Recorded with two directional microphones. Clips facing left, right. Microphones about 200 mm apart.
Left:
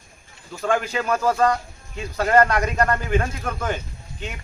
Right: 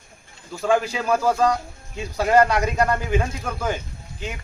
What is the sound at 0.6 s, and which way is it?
Speech, 5° right (ahead or behind).